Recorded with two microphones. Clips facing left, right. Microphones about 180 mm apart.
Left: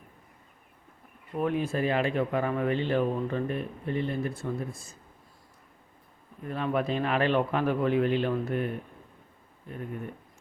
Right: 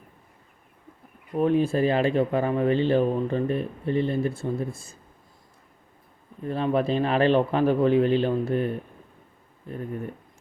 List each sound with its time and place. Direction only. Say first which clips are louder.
1.4 s speech: right 6 dB; 30° right (ahead or behind)
6.4 s speech: right 5 dB; 30° right (ahead or behind)